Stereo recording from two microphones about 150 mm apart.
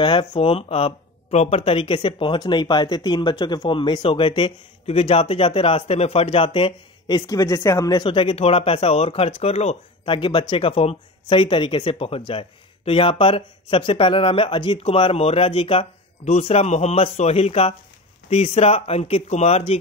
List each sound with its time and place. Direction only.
0.0 s speech: 30° left (ahead or behind)
8.0 s speech: 35° left (ahead or behind)